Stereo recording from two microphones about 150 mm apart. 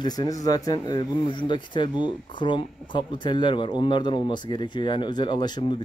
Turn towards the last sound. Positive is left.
turn(degrees=30)  # may be behind; listen again after turning